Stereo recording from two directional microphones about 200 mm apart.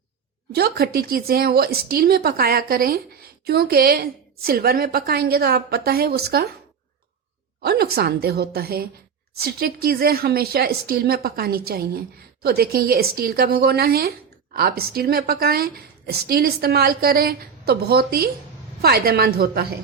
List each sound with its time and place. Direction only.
0.5 s speech: 50° right (ahead or behind)
7.6 s speech: 50° right (ahead or behind)